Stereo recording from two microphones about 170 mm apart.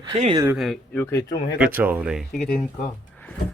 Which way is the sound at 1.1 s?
15° left (ahead or behind).